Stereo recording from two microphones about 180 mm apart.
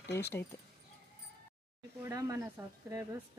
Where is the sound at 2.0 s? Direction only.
15° right (ahead or behind).